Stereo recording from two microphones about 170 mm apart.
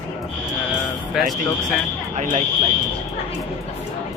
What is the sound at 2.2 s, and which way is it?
Speech, 50° right (ahead or behind).